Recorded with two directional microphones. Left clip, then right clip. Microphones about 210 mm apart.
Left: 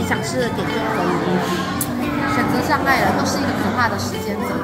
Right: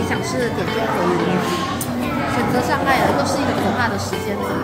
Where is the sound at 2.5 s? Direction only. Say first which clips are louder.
Right 1 dB; 5° left (ahead or behind).